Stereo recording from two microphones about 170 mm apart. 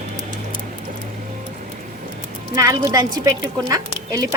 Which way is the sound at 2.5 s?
20° right (ahead or behind).